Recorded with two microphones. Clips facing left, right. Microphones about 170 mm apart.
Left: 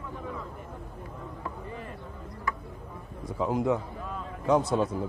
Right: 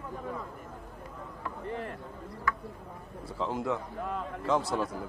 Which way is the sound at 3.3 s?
15° left (ahead or behind).